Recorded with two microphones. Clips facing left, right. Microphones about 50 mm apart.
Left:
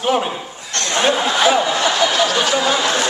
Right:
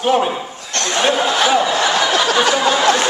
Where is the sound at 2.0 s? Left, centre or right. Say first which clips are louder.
Right 2 dB; right.